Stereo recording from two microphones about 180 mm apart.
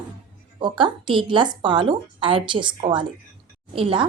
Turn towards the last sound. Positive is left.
turn(degrees=-30)  # may be behind; listen again after turning